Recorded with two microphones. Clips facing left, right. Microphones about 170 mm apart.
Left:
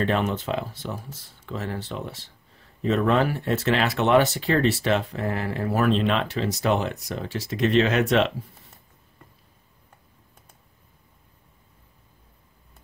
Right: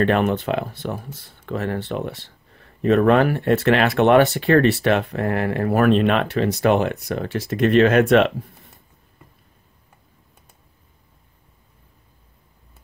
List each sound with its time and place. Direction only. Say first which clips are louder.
0.0 s speech: right 6 dB; 60° right (ahead or behind)